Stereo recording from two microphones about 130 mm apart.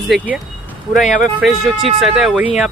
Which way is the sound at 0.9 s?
75° left (ahead or behind).